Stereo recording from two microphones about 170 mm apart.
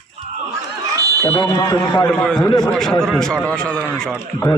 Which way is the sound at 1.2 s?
25° left (ahead or behind).